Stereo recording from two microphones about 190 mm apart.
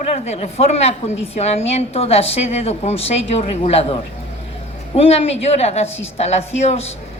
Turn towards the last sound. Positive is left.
turn(degrees=35)  # may be behind; listen again after turning